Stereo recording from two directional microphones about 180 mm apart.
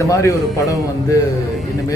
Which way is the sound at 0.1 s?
20° left (ahead or behind).